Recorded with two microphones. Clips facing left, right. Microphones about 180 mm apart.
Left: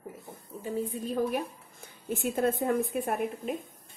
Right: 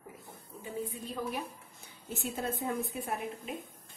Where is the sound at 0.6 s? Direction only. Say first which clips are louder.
Left 6 dB; 40° left (ahead or behind).